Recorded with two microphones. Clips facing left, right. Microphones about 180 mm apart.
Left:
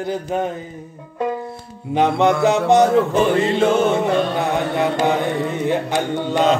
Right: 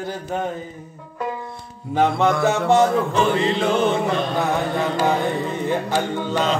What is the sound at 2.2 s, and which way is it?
Music, 20° left (ahead or behind).